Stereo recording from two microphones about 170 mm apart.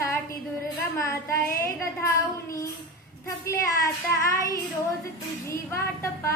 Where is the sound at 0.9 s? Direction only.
15° left (ahead or behind).